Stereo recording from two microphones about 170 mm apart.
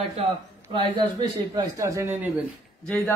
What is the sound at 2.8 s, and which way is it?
Speech, 5° left (ahead or behind).